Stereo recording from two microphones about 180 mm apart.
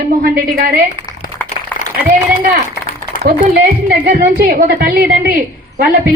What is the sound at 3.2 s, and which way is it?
A woman's voice, 55° right (ahead or behind).